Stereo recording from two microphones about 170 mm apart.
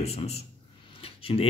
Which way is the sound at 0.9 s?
35° left (ahead or behind).